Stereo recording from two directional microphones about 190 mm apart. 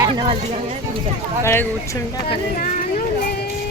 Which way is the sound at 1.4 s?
15° left (ahead or behind).